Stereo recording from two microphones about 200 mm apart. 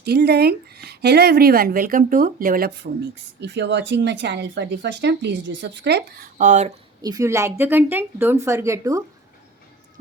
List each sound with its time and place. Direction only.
0.0 s speech: 55° right (ahead or behind)
6.4 s speech: 35° right (ahead or behind)
7.0 s a woman's voice: 15° right (ahead or behind)